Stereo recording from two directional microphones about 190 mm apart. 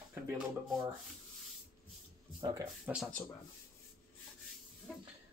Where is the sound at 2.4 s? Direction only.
20° right (ahead or behind).